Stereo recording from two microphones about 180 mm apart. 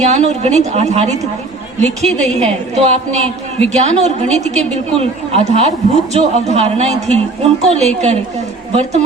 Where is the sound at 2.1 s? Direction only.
40° right (ahead or behind).